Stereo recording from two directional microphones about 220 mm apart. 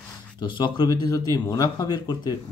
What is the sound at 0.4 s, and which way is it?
Speech, 20° left (ahead or behind).